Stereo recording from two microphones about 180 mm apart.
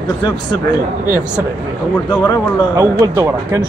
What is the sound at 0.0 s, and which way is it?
Speech, 25° left (ahead or behind).